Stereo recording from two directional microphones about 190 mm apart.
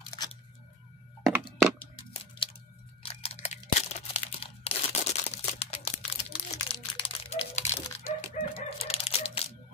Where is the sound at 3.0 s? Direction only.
30° left (ahead or behind).